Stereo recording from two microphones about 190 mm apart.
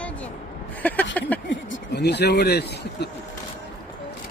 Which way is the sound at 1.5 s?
65° left (ahead or behind).